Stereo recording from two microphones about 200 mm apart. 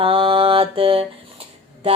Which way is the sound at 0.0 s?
25° right (ahead or behind).